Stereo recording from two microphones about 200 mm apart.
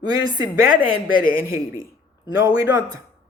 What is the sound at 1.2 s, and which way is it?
Speech, 45° left (ahead or behind).